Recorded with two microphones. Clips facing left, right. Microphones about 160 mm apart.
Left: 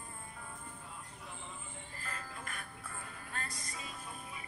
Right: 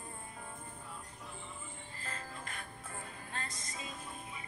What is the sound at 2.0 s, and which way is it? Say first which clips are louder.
Music: right 1 dB; 25° right (ahead or behind).